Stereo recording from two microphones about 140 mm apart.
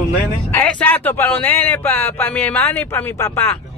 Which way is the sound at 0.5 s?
10° left (ahead or behind).